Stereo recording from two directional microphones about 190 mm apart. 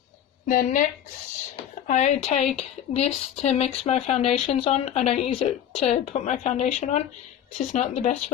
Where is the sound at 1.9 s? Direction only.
40° left (ahead or behind).